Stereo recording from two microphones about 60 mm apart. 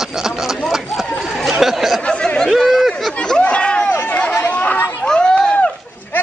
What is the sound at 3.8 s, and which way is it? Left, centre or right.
Chatter, left.